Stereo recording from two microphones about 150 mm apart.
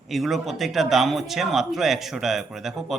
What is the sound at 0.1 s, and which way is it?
Speech, centre (ahead or behind).